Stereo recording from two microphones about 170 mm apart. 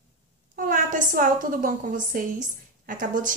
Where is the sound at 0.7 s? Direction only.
55° right (ahead or behind).